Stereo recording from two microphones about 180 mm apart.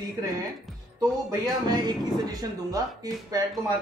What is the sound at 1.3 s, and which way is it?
Speech, 20° right (ahead or behind).